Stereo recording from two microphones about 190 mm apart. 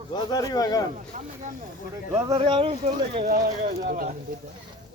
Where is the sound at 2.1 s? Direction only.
20° right (ahead or behind); by 4.1 s 40° right (ahead or behind).